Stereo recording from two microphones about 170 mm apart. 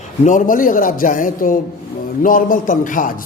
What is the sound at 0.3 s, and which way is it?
A man's voice, 50° left (ahead or behind).